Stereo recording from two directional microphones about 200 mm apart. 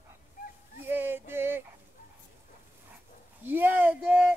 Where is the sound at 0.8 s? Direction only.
10° right (ahead or behind).